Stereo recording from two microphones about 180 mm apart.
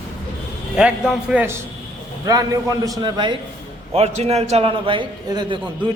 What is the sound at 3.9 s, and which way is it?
A man's voice, 35° right (ahead or behind).